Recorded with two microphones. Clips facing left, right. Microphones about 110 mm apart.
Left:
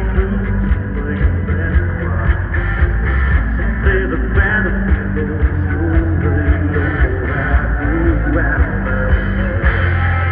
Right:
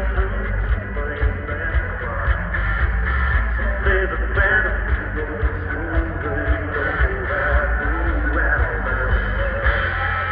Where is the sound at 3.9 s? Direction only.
15° right (ahead or behind).